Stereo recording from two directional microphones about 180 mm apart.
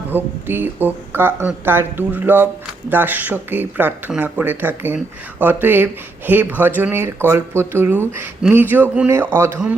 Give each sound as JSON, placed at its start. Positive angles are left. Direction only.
{"t": 0.1, "sound": "speech", "side_deg": -10}